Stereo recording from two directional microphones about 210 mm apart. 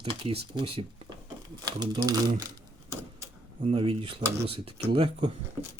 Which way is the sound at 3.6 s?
25° right (ahead or behind).